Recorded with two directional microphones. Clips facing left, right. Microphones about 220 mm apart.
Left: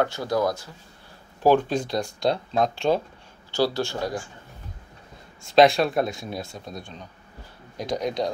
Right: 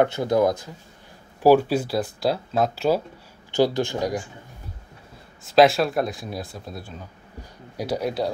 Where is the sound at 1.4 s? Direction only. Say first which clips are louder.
Right 3 dB; 10° right (ahead or behind).